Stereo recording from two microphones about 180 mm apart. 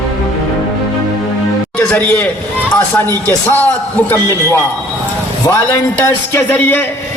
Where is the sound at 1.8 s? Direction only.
10° left (ahead or behind).